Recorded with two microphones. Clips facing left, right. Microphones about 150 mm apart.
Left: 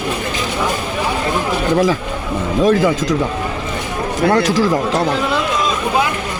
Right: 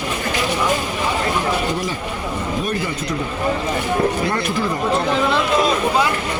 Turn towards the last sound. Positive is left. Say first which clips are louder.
# left 4 dB
turn(degrees=90)